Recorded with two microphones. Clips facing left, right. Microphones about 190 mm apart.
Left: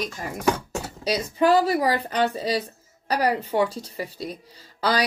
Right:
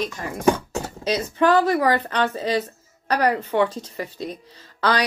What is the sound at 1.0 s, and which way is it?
Speech, 10° left (ahead or behind).